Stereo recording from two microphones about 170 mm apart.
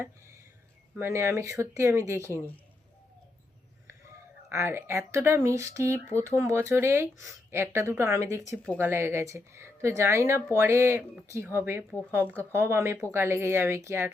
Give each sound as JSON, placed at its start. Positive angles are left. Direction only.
{"t": 0.9, "sound": "a woman's voice", "side_deg": -15}
{"t": 4.4, "sound": "a woman's voice", "side_deg": -15}